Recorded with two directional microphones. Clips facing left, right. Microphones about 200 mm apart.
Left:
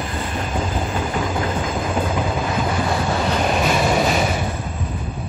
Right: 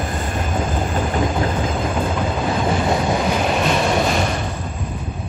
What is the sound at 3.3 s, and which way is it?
Train, centre (ahead or behind).